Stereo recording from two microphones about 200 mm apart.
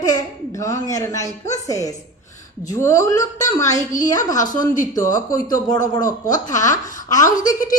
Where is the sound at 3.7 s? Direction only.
40° left (ahead or behind).